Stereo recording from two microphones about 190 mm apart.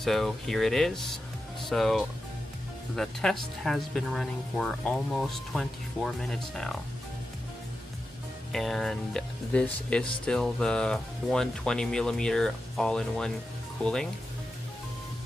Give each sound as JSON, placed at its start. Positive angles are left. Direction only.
{"t": 0.0, "sound": "speech", "side_deg": 0}
{"t": 8.5, "sound": "speech", "side_deg": 0}